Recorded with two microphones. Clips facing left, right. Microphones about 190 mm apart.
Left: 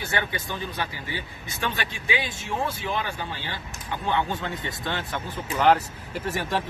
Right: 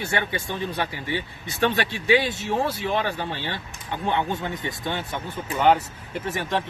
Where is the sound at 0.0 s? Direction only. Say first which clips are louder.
Right 2 dB; 25° right (ahead or behind).